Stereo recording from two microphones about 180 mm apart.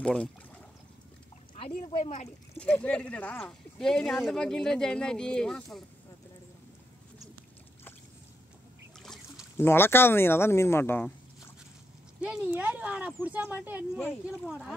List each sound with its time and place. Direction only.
0.0 s speech: 5° left (ahead or behind)
1.9 s speech: 35° left (ahead or behind)
2.6 s speech: 5° left (ahead or behind)
9.0 s trickle: centre (ahead or behind)
9.6 s speech: 10° left (ahead or behind)
12.2 s speech: 5° right (ahead or behind)
13.9 s speech: 5° left (ahead or behind)